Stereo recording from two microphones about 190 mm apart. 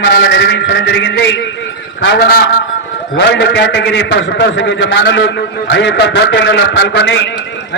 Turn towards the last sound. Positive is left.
turn(degrees=70)  # may be behind; listen again after turning